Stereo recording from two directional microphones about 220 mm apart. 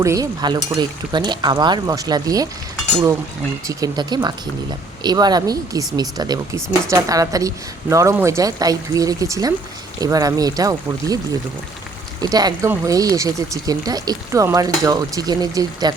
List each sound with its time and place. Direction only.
0.0 s speech: 15° right (ahead or behind)
3.7 s speech: 15° right (ahead or behind)